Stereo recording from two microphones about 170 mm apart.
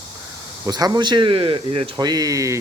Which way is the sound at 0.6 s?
25° right (ahead or behind).